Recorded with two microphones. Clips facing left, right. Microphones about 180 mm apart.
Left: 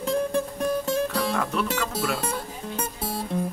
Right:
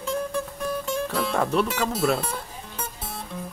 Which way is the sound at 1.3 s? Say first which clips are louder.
Right 3 dB; 35° right (ahead or behind).